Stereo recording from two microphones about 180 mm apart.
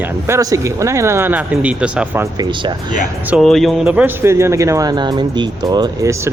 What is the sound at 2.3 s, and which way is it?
Speech, 25° right (ahead or behind).